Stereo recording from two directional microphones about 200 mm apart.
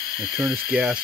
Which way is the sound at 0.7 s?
5° right (ahead or behind).